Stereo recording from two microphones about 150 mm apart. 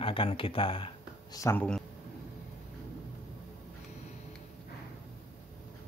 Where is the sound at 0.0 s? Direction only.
35° left (ahead or behind).